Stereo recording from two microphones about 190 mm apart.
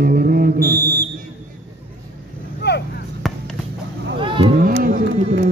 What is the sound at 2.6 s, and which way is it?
Chop, 65° left (ahead or behind).